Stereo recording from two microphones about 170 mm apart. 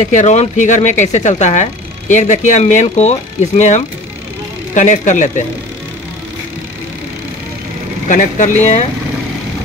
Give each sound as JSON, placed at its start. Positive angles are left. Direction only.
{"t": 0.0, "sound": "speech", "side_deg": 45}
{"t": 8.1, "sound": "speech", "side_deg": 50}